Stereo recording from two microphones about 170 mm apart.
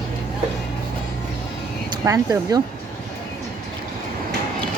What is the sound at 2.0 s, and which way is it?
Speech, 20° right (ahead or behind).